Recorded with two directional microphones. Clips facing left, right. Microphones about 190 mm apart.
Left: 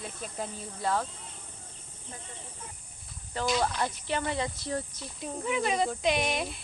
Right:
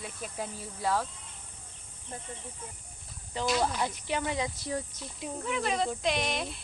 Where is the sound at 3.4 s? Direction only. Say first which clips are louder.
Even; 5° right (ahead or behind).